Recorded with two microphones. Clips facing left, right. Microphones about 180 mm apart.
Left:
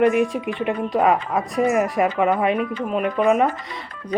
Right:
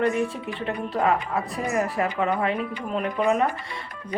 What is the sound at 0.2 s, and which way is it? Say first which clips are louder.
A woman's voice: left 6 dB; 15° left (ahead or behind).